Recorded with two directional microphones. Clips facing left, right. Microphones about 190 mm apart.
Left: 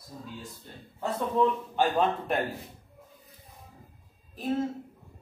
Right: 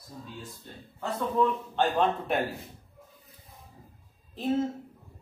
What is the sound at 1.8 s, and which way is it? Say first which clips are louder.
Speech: even; centre (ahead or behind).